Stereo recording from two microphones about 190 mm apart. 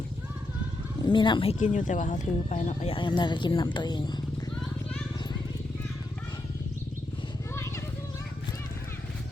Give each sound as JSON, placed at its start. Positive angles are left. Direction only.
{"t": 1.0, "sound": "speech", "side_deg": 25}
{"t": 2.9, "sound": "speech", "side_deg": 25}